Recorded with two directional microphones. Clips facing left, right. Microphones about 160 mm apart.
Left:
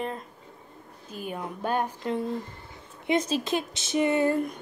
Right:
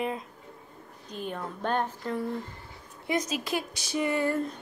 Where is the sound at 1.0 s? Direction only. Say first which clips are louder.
Left 1 dB; 10° left (ahead or behind).